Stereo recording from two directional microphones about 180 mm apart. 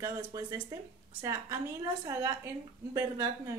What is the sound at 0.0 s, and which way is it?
Speech, 20° right (ahead or behind).